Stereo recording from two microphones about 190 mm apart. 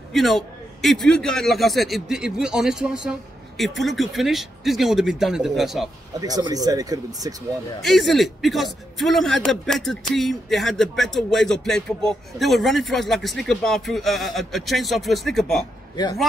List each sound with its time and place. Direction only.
0.1 s a man's voice: centre (ahead or behind)
6.2 s speech: 20° right (ahead or behind)
7.8 s speech: centre (ahead or behind)